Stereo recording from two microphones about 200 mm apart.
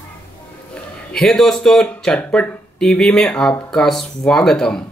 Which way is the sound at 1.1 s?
Centre (ahead or behind).